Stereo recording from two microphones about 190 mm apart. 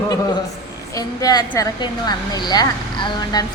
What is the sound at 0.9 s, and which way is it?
Speech, 20° left (ahead or behind).